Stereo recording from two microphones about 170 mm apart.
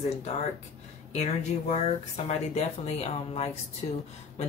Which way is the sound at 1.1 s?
40° left (ahead or behind).